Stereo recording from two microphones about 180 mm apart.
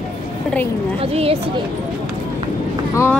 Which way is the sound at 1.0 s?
35° right (ahead or behind).